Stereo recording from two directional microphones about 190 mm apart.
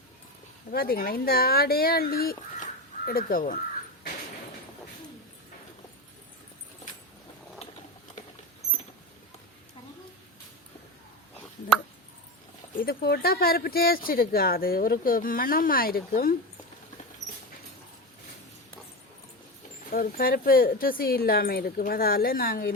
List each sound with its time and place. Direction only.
0.7 s speech: 50° left (ahead or behind)
12.8 s speech: 55° left (ahead or behind)
19.9 s speech: 50° left (ahead or behind)